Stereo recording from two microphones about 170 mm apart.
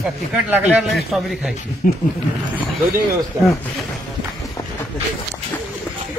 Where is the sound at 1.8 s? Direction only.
60° left (ahead or behind).